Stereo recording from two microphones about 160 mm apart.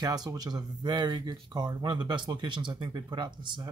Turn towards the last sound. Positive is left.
turn(degrees=-30)  # may be behind; listen again after turning